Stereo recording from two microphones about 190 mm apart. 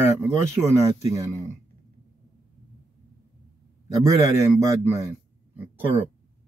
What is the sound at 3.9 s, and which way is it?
A man's voice, 15° right (ahead or behind).